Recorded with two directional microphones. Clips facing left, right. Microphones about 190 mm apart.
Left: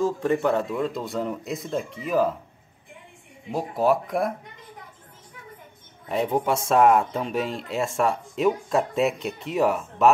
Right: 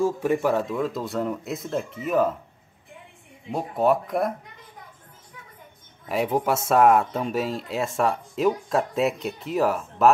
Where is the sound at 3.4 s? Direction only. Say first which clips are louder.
Even; centre (ahead or behind).